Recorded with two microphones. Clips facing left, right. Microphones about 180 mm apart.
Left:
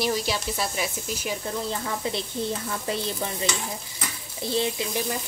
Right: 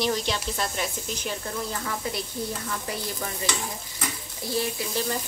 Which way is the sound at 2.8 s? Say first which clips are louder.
Left 4 dB; 25° left (ahead or behind).